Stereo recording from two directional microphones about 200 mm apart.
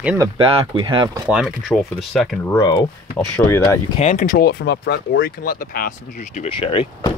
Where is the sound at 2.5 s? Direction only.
20° left (ahead or behind).